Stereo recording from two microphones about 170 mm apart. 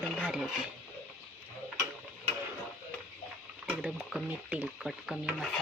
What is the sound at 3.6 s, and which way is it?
Stir, 5° right (ahead or behind).